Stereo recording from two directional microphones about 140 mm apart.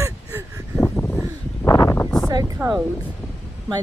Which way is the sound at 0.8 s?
15° left (ahead or behind).